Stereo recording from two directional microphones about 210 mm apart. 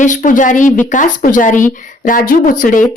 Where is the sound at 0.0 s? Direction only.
35° left (ahead or behind).